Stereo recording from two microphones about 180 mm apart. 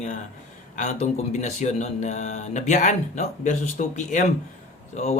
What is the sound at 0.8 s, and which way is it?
A man's voice, 40° left (ahead or behind).